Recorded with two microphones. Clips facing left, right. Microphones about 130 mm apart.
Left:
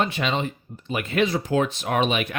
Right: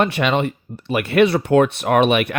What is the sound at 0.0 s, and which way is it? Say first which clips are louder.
Speech: right 6 dB; 65° right (ahead or behind).